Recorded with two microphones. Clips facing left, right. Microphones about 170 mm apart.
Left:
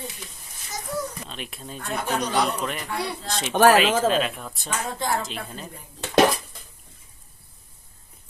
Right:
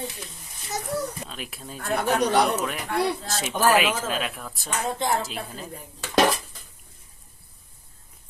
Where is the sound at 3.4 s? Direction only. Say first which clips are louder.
Left 6 dB; 70° left (ahead or behind).